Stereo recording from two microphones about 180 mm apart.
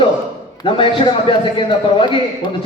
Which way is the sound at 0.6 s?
30° left (ahead or behind).